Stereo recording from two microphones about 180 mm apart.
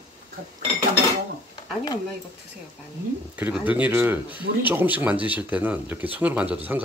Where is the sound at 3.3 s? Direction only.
10° right (ahead or behind).